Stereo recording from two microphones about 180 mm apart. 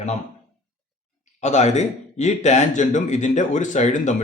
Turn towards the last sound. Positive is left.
turn(degrees=40)  # may be behind; listen again after turning